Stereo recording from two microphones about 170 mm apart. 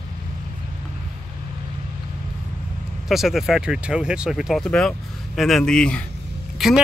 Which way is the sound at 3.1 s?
Centre (ahead or behind).